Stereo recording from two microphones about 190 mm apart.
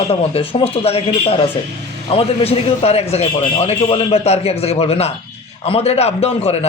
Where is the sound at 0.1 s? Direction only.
30° left (ahead or behind).